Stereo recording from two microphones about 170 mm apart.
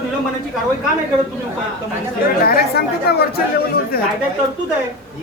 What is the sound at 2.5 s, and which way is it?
Speech, 70° left (ahead or behind).